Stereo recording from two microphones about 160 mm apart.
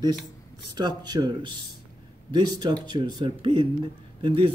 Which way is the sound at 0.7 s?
25° right (ahead or behind).